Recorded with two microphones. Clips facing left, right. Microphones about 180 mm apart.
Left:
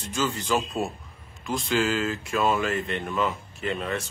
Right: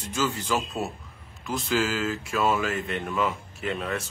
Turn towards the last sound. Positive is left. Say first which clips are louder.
# left 1 dB
turn(degrees=-5)  # may be behind; listen again after turning